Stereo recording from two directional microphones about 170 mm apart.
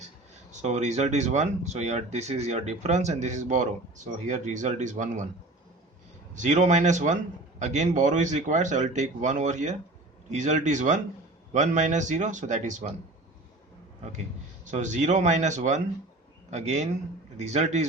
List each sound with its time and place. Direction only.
0.5 s speech: 40° right (ahead or behind)
6.3 s speech: 45° right (ahead or behind)
14.6 s a man's voice: 45° right (ahead or behind)